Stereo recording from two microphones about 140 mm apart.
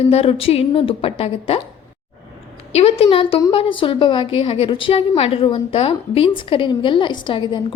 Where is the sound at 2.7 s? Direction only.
45° left (ahead or behind).